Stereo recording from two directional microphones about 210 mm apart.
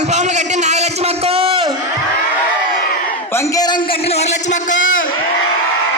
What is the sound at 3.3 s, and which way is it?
A man's voice, 15° left (ahead or behind).